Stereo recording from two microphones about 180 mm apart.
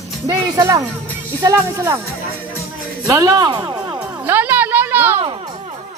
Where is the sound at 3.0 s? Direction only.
20° right (ahead or behind).